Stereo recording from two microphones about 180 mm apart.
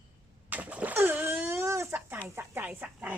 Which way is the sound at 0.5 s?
10° right (ahead or behind).